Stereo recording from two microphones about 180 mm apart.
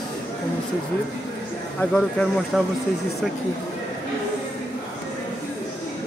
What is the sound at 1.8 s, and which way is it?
Speech, 5° left (ahead or behind).